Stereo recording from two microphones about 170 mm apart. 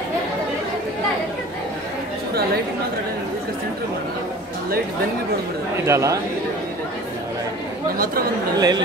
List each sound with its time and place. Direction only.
5.9 s speech: 15° right (ahead or behind)
8.5 s speech: 25° right (ahead or behind)